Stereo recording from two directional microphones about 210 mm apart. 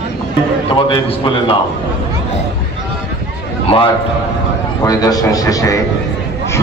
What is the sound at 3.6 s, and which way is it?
A man's voice, 25° left (ahead or behind).